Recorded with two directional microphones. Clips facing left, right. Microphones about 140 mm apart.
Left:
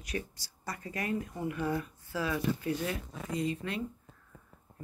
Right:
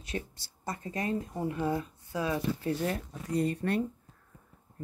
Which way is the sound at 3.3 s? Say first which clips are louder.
Right 5 dB; 50° right (ahead or behind).